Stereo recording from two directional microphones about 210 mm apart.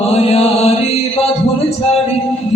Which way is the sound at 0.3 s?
30° left (ahead or behind).